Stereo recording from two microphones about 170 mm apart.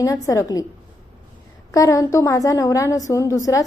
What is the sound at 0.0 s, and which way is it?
Speech, 20° left (ahead or behind).